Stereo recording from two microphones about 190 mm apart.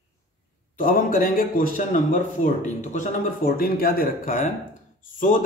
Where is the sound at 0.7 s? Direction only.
50° left (ahead or behind).